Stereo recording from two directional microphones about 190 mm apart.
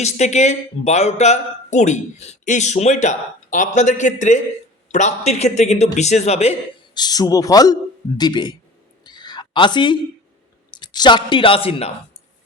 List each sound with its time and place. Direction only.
0.0 s speech: 35° left (ahead or behind)
6.9 s speech: 20° left (ahead or behind)
9.0 s a sound: 20° left (ahead or behind)
10.7 s speech: 25° left (ahead or behind)